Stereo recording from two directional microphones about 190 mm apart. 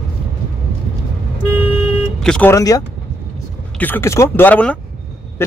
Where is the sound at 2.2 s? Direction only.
5° left (ahead or behind).